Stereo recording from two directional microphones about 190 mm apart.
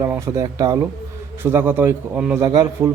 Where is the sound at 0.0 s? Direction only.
15° right (ahead or behind).